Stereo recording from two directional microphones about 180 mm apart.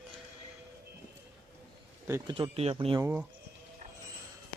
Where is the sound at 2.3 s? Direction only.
35° right (ahead or behind).